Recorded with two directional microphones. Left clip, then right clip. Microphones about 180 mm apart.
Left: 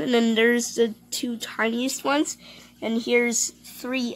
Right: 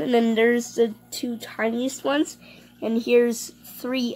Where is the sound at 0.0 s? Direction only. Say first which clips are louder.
Right 1 dB; centre (ahead or behind).